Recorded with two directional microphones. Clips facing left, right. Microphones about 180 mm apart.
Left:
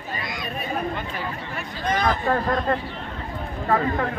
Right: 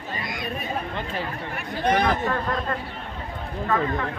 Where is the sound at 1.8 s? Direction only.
60° right (ahead or behind).